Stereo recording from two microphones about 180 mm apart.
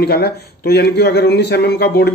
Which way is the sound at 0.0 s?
60° left (ahead or behind).